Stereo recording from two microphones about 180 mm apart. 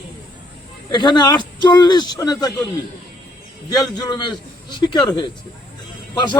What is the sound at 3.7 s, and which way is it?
Speech, 20° left (ahead or behind).